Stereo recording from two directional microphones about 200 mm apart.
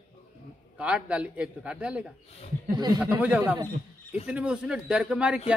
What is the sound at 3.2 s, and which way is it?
A man's voice, 10° right (ahead or behind).